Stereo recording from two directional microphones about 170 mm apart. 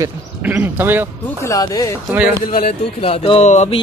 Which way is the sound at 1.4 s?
20° left (ahead or behind).